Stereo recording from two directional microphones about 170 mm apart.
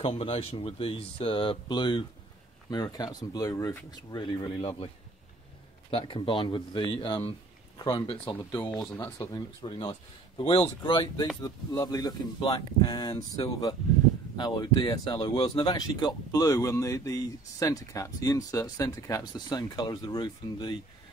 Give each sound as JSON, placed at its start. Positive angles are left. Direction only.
{"t": 0.0, "sound": "speech", "side_deg": 35}
{"t": 5.9, "sound": "speech", "side_deg": 30}